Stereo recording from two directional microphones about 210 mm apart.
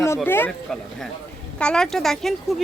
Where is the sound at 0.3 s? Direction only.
10° left (ahead or behind).